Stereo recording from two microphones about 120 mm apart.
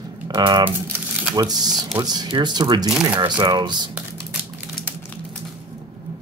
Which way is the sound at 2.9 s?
5° right (ahead or behind).